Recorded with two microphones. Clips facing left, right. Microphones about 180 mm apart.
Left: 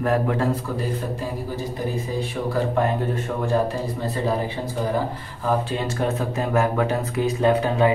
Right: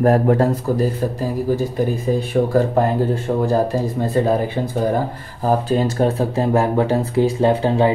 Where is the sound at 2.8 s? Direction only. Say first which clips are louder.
Right 5 dB; 35° right (ahead or behind).